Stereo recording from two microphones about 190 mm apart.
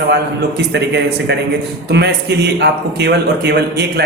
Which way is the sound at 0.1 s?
65° right (ahead or behind).